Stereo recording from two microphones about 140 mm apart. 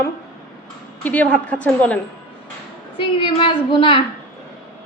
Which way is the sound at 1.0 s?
10° left (ahead or behind).